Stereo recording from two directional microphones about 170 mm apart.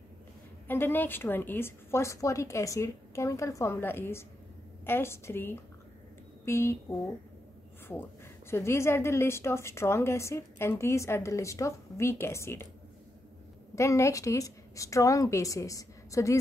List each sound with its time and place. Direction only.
0.7 s a woman's voice: 10° left (ahead or behind)
8.5 s a woman's voice: 15° left (ahead or behind)
13.7 s a woman's voice: 15° left (ahead or behind)